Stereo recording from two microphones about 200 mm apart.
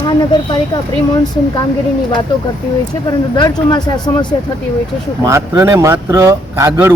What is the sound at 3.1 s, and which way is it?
Speech, 20° left (ahead or behind).